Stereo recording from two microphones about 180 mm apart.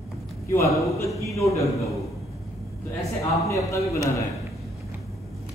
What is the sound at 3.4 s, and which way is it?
Speech, 15° left (ahead or behind).